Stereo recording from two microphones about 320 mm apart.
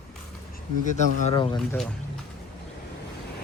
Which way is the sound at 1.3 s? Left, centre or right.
Centre.